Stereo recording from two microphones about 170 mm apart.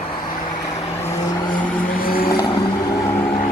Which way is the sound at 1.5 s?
60° left (ahead or behind).